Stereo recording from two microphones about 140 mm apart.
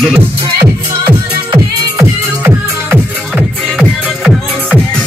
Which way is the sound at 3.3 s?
Centre (ahead or behind).